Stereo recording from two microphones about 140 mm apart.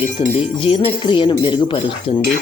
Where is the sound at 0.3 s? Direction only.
45° left (ahead or behind).